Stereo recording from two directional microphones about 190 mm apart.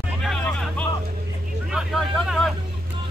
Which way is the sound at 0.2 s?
Centre (ahead or behind).